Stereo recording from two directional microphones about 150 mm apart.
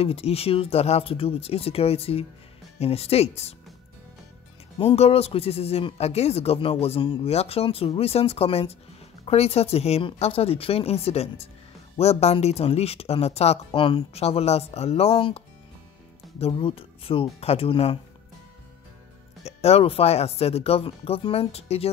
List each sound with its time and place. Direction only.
0.0 s speech: 40° left (ahead or behind)
4.7 s speech: 45° left (ahead or behind)
19.4 s speech: 45° left (ahead or behind)